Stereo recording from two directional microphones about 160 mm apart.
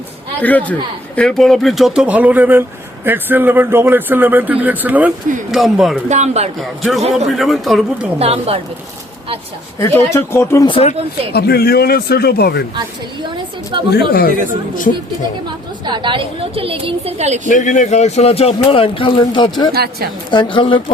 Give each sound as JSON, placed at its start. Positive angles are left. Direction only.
{"t": 0.4, "sound": "a man's voice", "side_deg": 10}
{"t": 6.1, "sound": "speech", "side_deg": -45}
{"t": 6.6, "sound": "speech", "side_deg": 0}
{"t": 8.2, "sound": "a woman's voice", "side_deg": -40}
{"t": 9.7, "sound": "speech", "side_deg": 20}
{"t": 10.7, "sound": "a man's voice", "side_deg": 40}
{"t": 11.3, "sound": "speech", "side_deg": 80}
{"t": 13.7, "sound": "speech", "side_deg": -30}
{"t": 15.8, "sound": "a woman's voice", "side_deg": -30}
{"t": 17.4, "sound": "a man's voice", "side_deg": 50}
{"t": 19.7, "sound": "a woman's voice", "side_deg": -75}
{"t": 20.3, "sound": "a man's voice", "side_deg": 30}